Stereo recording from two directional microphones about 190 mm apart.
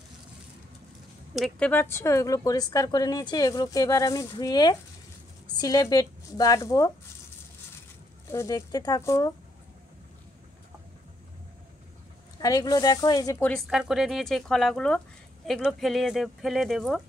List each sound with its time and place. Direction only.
1.3 s speech: centre (ahead or behind)
1.7 s a woman's voice: 10° left (ahead or behind)
8.3 s speech: 15° left (ahead or behind)
12.4 s a woman's voice: 20° left (ahead or behind)
13.5 s speech: centre (ahead or behind)